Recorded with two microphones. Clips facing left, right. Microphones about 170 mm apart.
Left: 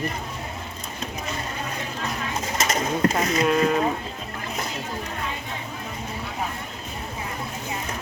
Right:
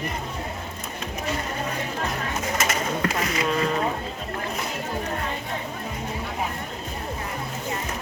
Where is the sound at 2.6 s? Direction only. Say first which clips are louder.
Left 5 dB; 40° left (ahead or behind).